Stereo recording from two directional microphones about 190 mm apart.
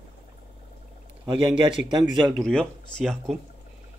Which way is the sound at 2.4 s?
5° left (ahead or behind).